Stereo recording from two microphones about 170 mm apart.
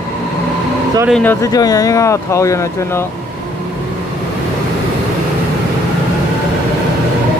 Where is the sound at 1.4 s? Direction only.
20° left (ahead or behind).